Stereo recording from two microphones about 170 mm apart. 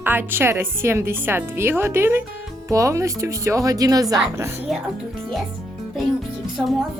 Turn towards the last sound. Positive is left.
turn(degrees=0)  # may be behind; listen again after turning